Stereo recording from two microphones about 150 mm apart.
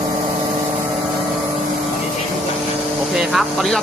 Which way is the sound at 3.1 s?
Centre (ahead or behind).